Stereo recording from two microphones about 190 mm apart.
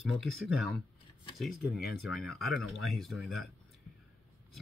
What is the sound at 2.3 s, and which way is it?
Speech, centre (ahead or behind).